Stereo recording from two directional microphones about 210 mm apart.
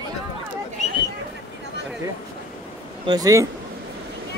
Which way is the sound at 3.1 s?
15° right (ahead or behind).